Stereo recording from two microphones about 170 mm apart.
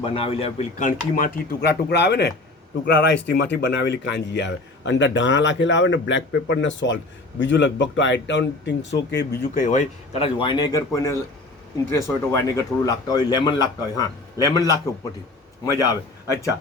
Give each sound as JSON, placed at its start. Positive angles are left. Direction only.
{"t": 0.0, "sound": "speech", "side_deg": 30}
{"t": 9.6, "sound": "speech", "side_deg": 45}